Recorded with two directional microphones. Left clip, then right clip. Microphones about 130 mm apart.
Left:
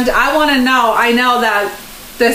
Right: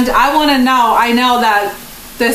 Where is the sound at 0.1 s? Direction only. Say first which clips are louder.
Right 1 dB; 25° right (ahead or behind).